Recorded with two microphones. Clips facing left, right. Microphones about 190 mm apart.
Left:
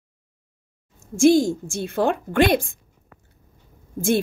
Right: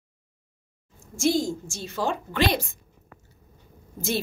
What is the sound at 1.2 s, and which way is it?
A woman's voice, 70° left (ahead or behind).